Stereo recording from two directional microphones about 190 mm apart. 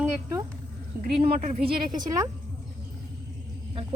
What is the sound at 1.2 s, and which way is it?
Speech, 35° right (ahead or behind).